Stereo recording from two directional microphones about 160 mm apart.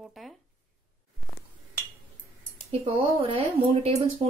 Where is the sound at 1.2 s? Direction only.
Centre (ahead or behind).